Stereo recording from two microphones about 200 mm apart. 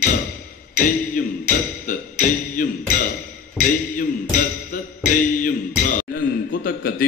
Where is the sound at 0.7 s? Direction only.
40° left (ahead or behind).